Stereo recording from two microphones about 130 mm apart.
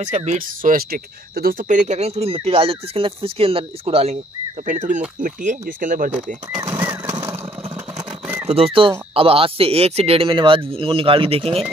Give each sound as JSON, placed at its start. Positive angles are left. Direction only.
{"t": 0.0, "sound": "speech", "side_deg": -65}
{"t": 4.6, "sound": "speech", "side_deg": -75}
{"t": 5.2, "sound": "speech", "side_deg": -85}
{"t": 6.6, "sound": "a sound", "side_deg": -20}
{"t": 8.5, "sound": "speech", "side_deg": -50}